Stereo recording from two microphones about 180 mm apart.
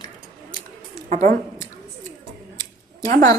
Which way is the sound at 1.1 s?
50° right (ahead or behind).